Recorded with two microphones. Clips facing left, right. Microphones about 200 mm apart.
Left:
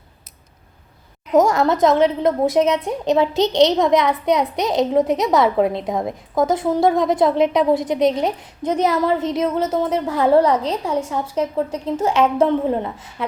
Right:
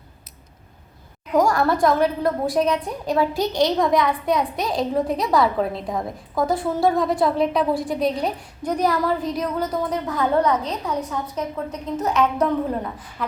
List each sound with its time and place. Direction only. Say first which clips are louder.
1.3 s a woman's voice: left 3 dB; 20° left (ahead or behind)